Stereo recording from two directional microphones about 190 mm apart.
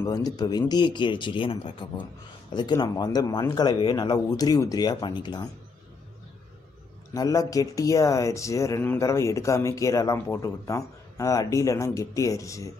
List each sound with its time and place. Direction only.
0.0 s speech: 20° left (ahead or behind)
7.2 s speech: 20° left (ahead or behind)